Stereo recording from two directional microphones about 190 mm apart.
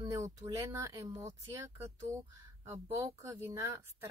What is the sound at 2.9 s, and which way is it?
Speech, 15° right (ahead or behind).